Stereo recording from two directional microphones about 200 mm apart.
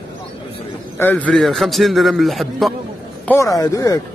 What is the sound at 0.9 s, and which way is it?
A man's voice, 10° left (ahead or behind).